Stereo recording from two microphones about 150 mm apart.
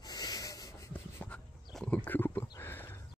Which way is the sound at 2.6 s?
15° left (ahead or behind).